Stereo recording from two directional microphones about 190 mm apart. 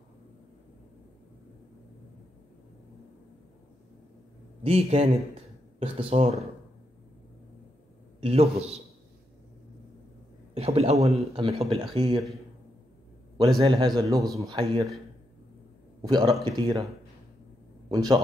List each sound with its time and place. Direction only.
4.6 s speech: 30° right (ahead or behind)
8.2 s a man's voice: 30° right (ahead or behind)
10.5 s a man's voice: 30° right (ahead or behind)
13.4 s a man's voice: 30° right (ahead or behind)
13.9 s a man's voice: 15° right (ahead or behind)
16.0 s a man's voice: 20° right (ahead or behind)
17.8 s a man's voice: 25° right (ahead or behind)